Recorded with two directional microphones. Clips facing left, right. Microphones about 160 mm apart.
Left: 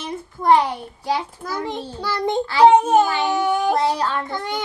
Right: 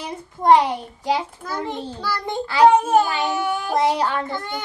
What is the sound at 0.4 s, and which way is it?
Speech, 20° right (ahead or behind).